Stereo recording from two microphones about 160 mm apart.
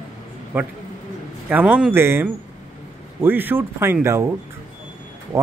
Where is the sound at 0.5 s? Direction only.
15° right (ahead or behind).